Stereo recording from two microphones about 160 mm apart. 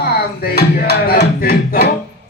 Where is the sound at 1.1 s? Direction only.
65° left (ahead or behind).